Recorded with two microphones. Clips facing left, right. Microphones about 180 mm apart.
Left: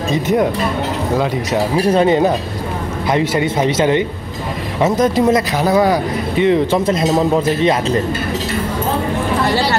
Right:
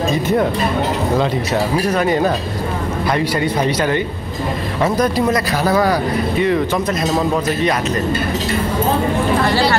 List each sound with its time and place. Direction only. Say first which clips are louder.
0.1 s speech: left 4 dB; 20° left (ahead or behind)
1.9 s speech: left 6 dB; 25° left (ahead or behind)